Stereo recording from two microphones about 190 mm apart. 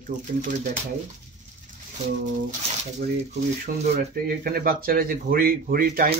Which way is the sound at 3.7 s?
45° right (ahead or behind).